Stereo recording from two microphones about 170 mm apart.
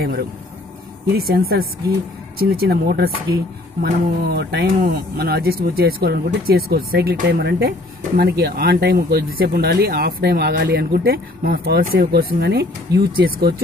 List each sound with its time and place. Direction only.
0.0 s speech: 65° right (ahead or behind)